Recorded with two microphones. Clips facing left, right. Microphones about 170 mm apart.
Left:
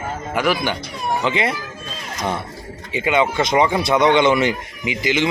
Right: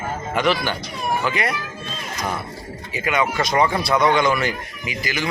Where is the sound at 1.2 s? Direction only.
25° left (ahead or behind).